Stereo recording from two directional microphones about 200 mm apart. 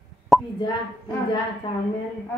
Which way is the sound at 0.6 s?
20° left (ahead or behind).